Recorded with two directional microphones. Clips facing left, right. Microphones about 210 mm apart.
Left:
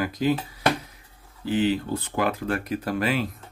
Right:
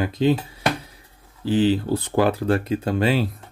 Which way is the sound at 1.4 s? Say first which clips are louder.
Right 4 dB; 30° right (ahead or behind).